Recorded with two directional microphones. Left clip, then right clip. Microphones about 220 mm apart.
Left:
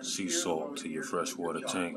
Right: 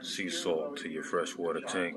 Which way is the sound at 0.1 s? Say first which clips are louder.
Even; 15° left (ahead or behind).